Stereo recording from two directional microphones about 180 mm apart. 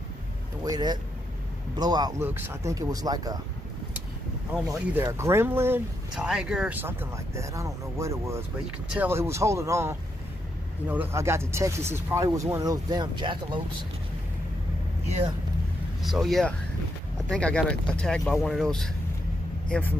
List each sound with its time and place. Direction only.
0.7 s speech: 25° right (ahead or behind)
4.7 s speech: 5° right (ahead or behind); by 13.6 s 25° right (ahead or behind)
16.0 s speech: centre (ahead or behind)